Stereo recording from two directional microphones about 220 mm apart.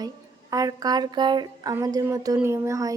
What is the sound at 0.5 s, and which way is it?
A woman's voice, 15° right (ahead or behind).